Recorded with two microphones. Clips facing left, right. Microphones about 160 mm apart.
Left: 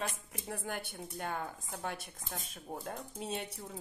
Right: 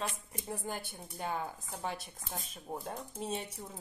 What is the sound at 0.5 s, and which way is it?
Speech, 60° left (ahead or behind).